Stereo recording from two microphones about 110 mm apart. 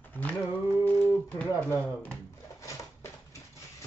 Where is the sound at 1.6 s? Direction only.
20° left (ahead or behind).